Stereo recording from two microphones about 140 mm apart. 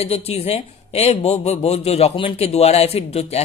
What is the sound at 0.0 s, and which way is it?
A man's voice, 50° left (ahead or behind).